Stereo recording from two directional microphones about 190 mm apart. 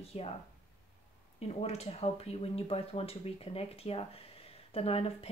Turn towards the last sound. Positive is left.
turn(degrees=30)  # may be behind; listen again after turning